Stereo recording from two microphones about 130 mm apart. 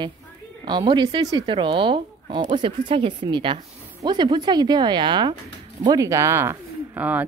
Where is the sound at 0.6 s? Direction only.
35° right (ahead or behind).